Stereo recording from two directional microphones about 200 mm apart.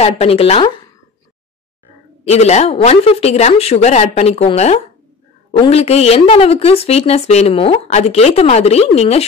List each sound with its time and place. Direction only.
0.0 s speech: 30° left (ahead or behind)
2.2 s speech: 35° left (ahead or behind)